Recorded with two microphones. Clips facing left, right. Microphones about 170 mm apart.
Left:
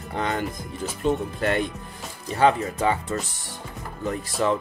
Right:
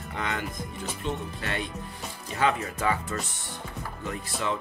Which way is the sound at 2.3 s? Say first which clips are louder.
Left 6 dB; 30° left (ahead or behind).